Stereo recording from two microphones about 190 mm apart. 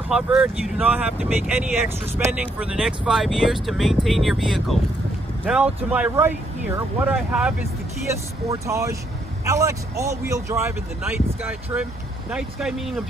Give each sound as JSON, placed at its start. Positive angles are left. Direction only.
{"t": 0.1, "sound": "speech", "side_deg": -5}